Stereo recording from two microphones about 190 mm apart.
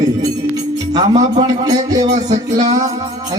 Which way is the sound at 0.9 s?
20° right (ahead or behind).